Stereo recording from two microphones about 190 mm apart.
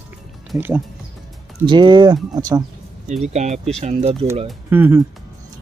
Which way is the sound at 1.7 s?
25° right (ahead or behind).